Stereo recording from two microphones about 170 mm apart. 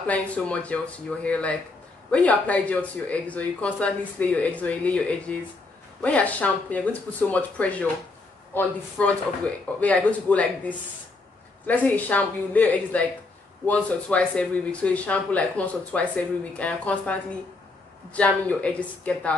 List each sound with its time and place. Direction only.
0.0 s speech: 10° left (ahead or behind)